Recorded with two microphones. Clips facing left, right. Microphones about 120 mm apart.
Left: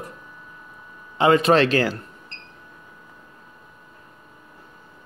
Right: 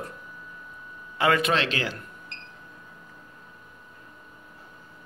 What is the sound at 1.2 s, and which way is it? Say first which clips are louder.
Speech: left 7 dB; 30° left (ahead or behind).